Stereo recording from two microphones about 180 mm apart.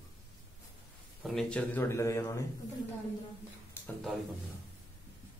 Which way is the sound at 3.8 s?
10° left (ahead or behind).